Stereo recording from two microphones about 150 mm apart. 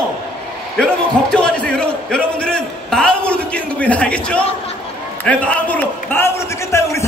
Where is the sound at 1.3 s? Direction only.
5° left (ahead or behind).